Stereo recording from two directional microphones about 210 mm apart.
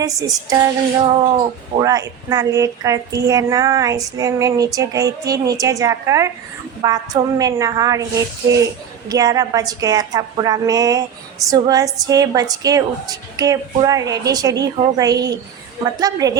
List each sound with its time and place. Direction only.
0.0 s a woman's voice: 15° right (ahead or behind)
9.0 s a woman's voice: 15° right (ahead or behind)